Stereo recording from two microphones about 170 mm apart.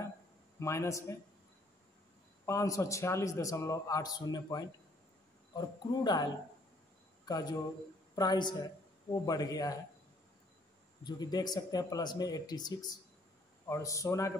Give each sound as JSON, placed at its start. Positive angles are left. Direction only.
{"t": 0.6, "sound": "a man's voice", "side_deg": 15}
{"t": 2.4, "sound": "a man's voice", "side_deg": 20}
{"t": 11.1, "sound": "a man's voice", "side_deg": 25}